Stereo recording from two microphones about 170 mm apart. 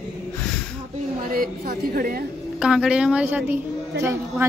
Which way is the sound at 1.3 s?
60° right (ahead or behind).